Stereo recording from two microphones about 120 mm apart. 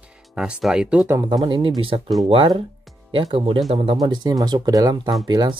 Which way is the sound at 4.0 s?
30° right (ahead or behind).